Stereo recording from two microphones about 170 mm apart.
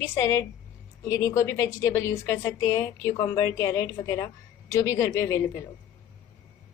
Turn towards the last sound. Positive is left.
turn(degrees=15)  # may be behind; listen again after turning